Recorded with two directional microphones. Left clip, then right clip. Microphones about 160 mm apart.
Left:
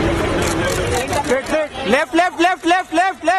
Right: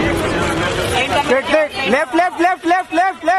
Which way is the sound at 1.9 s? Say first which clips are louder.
Right 1 dB; 5° left (ahead or behind).